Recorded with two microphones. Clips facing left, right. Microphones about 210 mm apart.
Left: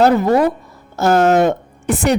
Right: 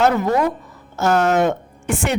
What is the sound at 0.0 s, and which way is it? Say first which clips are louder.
Speech: left 4 dB; 35° left (ahead or behind).